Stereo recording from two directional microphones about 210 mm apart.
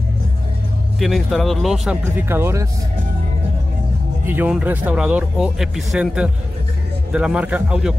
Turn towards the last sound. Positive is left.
turn(degrees=-5)  # may be behind; listen again after turning